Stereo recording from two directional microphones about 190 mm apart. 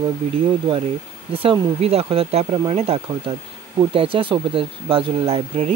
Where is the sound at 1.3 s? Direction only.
30° right (ahead or behind).